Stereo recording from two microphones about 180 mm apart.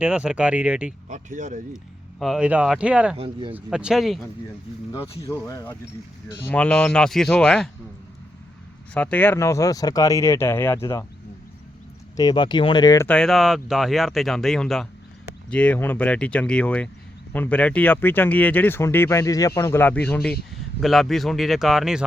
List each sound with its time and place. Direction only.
0.0 s speech: 5° right (ahead or behind)
1.0 s speech: 45° right (ahead or behind)
1.7 s speech: centre (ahead or behind)
3.2 s speech: 30° right (ahead or behind)
3.5 s speech: 5° right (ahead or behind)
4.9 s speech: 15° left (ahead or behind)
9.0 s speech: 10° left (ahead or behind)
12.1 s speech: 25° left (ahead or behind)
13.1 s speech: 5° left (ahead or behind)